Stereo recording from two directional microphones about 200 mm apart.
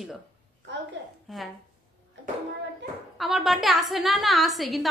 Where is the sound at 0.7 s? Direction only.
60° right (ahead or behind).